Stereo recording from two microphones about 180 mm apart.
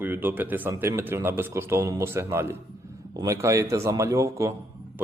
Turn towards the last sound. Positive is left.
turn(degrees=-15)  # may be behind; listen again after turning